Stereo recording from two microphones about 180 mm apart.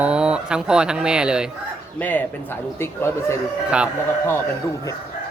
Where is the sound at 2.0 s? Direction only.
10° left (ahead or behind).